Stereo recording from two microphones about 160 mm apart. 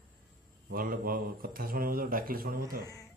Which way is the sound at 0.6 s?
60° right (ahead or behind).